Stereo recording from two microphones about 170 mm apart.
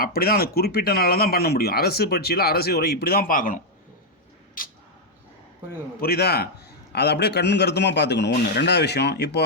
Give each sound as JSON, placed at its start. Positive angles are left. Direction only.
{"t": 0.0, "sound": "speech", "side_deg": 60}
{"t": 4.6, "sound": "a sound", "side_deg": 55}
{"t": 6.0, "sound": "a man's voice", "side_deg": 70}